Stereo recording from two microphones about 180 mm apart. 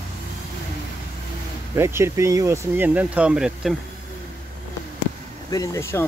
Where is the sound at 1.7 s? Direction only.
15° right (ahead or behind).